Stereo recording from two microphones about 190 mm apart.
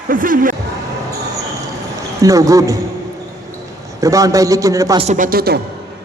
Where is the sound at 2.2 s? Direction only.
15° right (ahead or behind).